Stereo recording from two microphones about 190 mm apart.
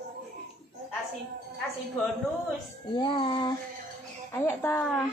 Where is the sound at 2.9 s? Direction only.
25° left (ahead or behind).